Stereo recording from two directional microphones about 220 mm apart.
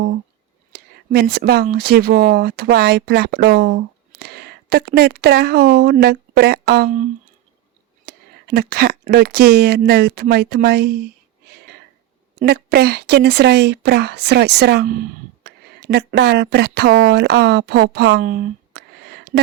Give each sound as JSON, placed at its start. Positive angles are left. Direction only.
{"t": 0.7, "sound": "speech", "side_deg": -45}
{"t": 8.0, "sound": "speech", "side_deg": -45}
{"t": 12.4, "sound": "speech", "side_deg": -45}